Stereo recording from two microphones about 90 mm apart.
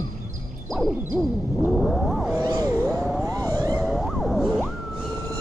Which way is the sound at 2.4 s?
45° right (ahead or behind).